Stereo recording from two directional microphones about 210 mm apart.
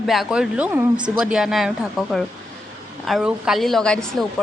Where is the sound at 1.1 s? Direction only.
5° right (ahead or behind).